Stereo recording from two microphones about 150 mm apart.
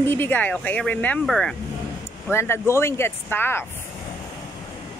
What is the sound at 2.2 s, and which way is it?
Speech, 15° left (ahead or behind).